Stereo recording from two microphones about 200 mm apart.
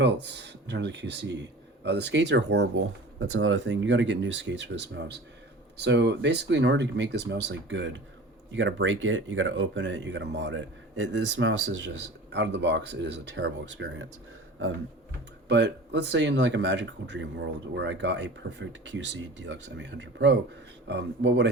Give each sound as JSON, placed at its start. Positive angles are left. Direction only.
{"t": 0.0, "sound": "speech", "side_deg": -60}
{"t": 15.4, "sound": "speech", "side_deg": -60}